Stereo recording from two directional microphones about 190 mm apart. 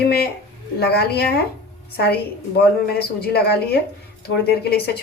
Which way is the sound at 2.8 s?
55° left (ahead or behind).